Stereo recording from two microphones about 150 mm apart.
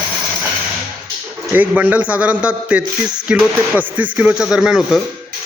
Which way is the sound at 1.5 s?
10° right (ahead or behind).